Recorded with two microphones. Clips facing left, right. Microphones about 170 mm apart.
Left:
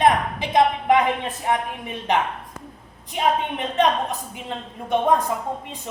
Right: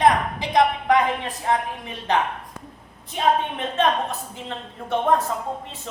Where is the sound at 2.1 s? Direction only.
20° left (ahead or behind).